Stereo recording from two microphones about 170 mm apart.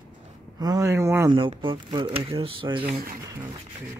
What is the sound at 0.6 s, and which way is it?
Speech, 20° right (ahead or behind).